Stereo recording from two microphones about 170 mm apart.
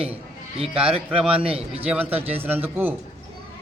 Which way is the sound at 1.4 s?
35° right (ahead or behind).